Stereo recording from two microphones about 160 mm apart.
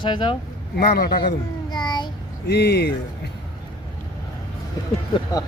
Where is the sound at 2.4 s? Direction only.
90° left.